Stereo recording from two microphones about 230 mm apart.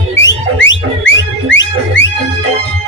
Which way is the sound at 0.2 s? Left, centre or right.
Left.